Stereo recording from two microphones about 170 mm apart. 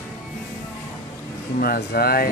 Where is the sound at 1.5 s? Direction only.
60° left (ahead or behind).